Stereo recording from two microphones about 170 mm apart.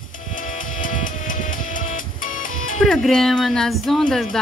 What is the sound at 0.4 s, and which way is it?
Music, 50° left (ahead or behind).